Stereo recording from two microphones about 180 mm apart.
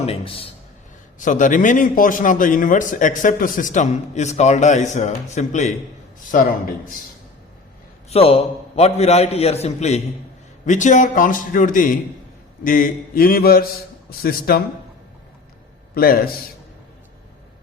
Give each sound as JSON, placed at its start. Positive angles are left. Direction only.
{"t": 0.0, "sound": "a man's voice", "side_deg": 30}
{"t": 1.2, "sound": "a man's voice", "side_deg": 45}
{"t": 8.1, "sound": "a man's voice", "side_deg": 35}
{"t": 16.0, "sound": "a man's voice", "side_deg": 55}